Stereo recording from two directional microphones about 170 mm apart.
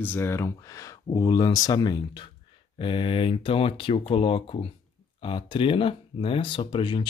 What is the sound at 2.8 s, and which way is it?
Mantra, 30° left (ahead or behind).